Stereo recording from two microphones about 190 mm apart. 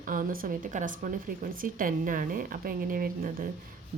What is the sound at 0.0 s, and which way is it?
A woman's voice, 45° right (ahead or behind).